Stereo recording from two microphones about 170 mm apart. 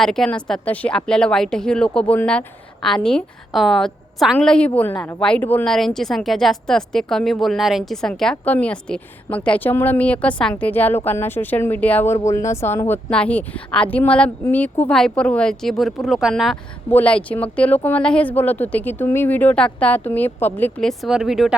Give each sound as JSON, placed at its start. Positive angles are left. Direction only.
{"t": 0.0, "sound": "a woman's voice", "side_deg": 5}